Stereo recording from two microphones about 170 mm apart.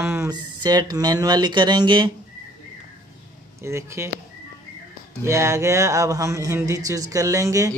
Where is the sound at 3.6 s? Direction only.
15° right (ahead or behind).